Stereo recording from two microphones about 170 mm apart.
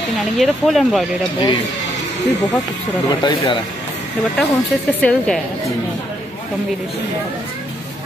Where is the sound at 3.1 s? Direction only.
30° left (ahead or behind).